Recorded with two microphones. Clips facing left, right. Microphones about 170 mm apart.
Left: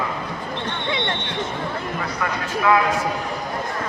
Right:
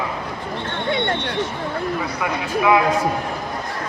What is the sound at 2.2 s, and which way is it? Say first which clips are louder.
Speech: right 2 dB; 15° right (ahead or behind).